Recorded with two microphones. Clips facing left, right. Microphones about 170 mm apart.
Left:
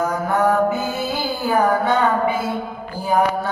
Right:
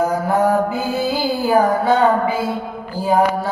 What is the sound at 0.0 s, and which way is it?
Mantra, 30° right (ahead or behind).